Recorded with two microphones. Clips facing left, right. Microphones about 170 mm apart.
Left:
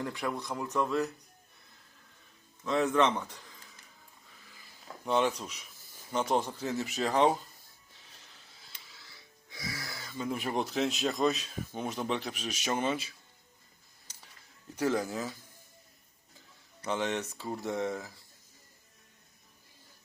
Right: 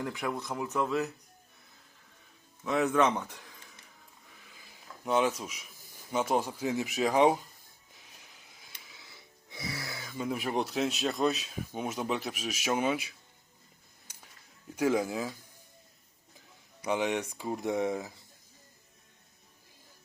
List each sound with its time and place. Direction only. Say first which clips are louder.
0.0 s speech: even; 5° right (ahead or behind)
2.6 s speech: even; 5° right (ahead or behind)
4.5 s a sound: right 2 dB; 15° right (ahead or behind)
5.0 s speech: right 1 dB; 5° right (ahead or behind)
8.1 s music: right 1 dB; 10° right (ahead or behind)
10.2 s speech: right 1 dB; 5° right (ahead or behind)
14.8 s speech: right 2 dB; 10° right (ahead or behind)
16.8 s speech: right 2 dB; 10° right (ahead or behind)